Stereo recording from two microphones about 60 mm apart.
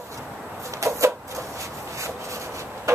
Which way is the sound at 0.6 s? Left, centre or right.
Right.